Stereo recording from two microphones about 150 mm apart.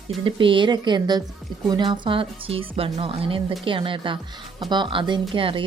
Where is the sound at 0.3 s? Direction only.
35° right (ahead or behind).